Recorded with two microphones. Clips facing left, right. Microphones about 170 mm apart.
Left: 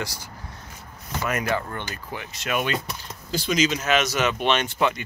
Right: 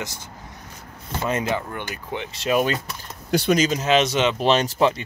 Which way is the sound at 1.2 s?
25° right (ahead or behind).